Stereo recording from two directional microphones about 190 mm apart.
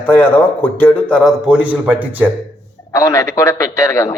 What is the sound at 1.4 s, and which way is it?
Speech, 5° right (ahead or behind).